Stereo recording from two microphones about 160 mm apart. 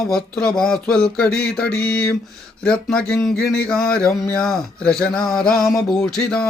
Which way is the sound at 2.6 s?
5° left (ahead or behind).